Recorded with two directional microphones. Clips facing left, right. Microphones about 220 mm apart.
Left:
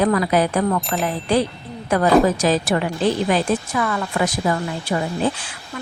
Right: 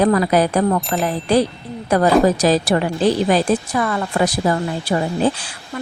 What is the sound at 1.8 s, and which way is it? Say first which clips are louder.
A woman's voice: right 1 dB; 35° right (ahead or behind).